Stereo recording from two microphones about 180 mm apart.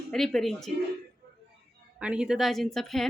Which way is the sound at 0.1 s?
Centre (ahead or behind).